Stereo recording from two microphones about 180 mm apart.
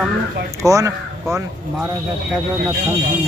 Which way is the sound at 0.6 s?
20° right (ahead or behind).